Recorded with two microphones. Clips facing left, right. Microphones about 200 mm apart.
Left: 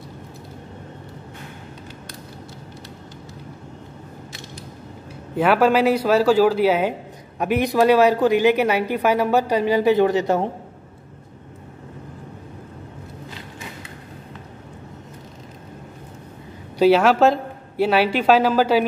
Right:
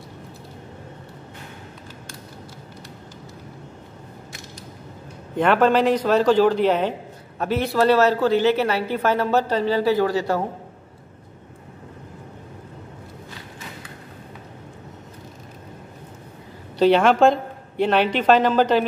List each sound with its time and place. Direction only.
5.3 s speech: 5° left (ahead or behind)
16.7 s speech: 5° left (ahead or behind)